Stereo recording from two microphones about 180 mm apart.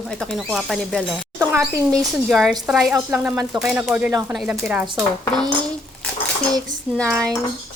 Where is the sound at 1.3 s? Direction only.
15° right (ahead or behind).